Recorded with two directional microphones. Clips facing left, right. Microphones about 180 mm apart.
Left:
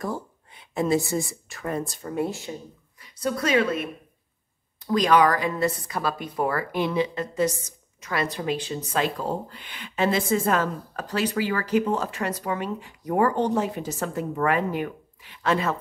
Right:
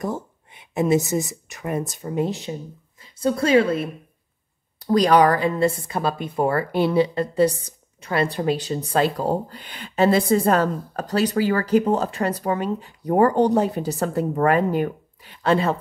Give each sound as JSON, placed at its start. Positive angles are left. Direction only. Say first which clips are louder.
{"t": 0.0, "sound": "a woman's voice", "louder": "right 3 dB", "side_deg": -20}